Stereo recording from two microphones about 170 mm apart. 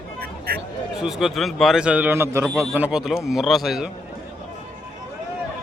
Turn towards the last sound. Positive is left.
turn(degrees=0)  # may be behind; listen again after turning